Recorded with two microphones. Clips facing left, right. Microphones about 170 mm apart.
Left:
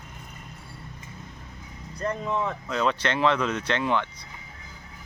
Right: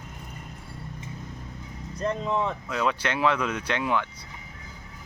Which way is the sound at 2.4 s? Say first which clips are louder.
Left 1 dB; 10° right (ahead or behind).